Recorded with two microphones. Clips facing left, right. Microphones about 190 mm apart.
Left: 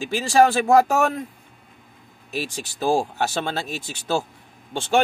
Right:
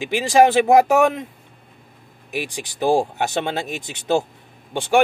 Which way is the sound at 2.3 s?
15° right (ahead or behind).